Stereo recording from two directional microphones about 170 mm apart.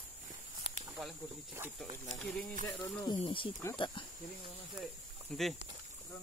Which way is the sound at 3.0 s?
30° left (ahead or behind).